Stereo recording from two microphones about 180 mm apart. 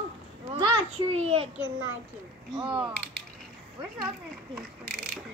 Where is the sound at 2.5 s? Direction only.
25° right (ahead or behind).